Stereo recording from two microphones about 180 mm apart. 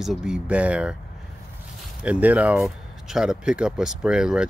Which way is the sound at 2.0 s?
5° right (ahead or behind).